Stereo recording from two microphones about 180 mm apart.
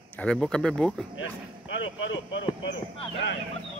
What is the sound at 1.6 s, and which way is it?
Speech, 90° left.